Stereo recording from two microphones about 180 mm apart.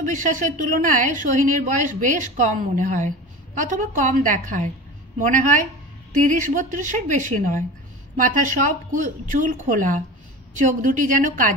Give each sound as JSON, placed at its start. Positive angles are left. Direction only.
{"t": 0.0, "sound": "a woman's voice", "side_deg": -45}